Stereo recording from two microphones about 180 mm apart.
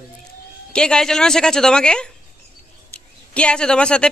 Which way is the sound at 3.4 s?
5° left (ahead or behind).